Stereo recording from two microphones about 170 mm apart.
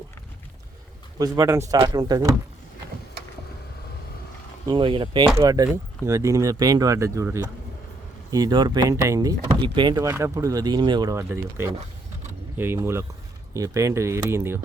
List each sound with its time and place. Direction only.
1.2 s speech: 20° right (ahead or behind)
4.7 s speech: 30° right (ahead or behind)
11.2 s speech: 15° right (ahead or behind)